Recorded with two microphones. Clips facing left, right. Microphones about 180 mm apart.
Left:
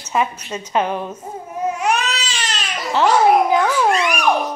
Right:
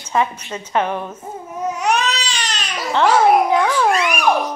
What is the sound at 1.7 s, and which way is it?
Baby cry, centre (ahead or behind).